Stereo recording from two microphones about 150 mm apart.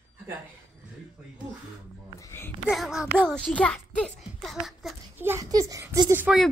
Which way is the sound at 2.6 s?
Centre (ahead or behind).